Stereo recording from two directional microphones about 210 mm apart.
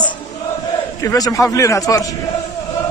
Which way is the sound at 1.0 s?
15° left (ahead or behind).